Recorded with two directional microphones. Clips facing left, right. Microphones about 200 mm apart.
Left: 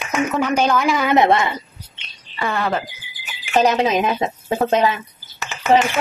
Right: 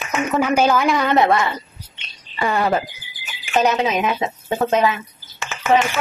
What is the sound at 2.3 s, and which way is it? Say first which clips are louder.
Speech: right 3 dB; 10° right (ahead or behind).